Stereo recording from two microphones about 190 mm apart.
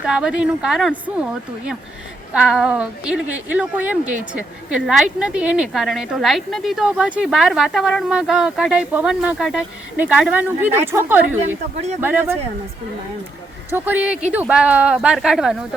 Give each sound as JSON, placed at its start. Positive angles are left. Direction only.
{"t": 0.0, "sound": "a woman's voice", "side_deg": -5}
{"t": 11.3, "sound": "speech", "side_deg": -35}
{"t": 11.9, "sound": "speech", "side_deg": -10}
{"t": 13.7, "sound": "a woman's voice", "side_deg": -10}